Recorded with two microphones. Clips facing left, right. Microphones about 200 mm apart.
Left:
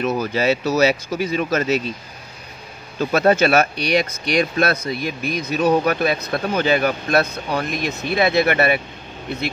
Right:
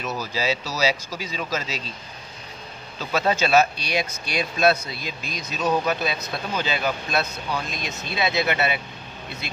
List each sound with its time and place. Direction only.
0.0 s speech: 55° left (ahead or behind)
3.0 s speech: 55° left (ahead or behind)